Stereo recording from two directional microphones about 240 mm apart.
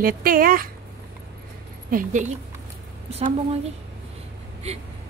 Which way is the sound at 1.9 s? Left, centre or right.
Right.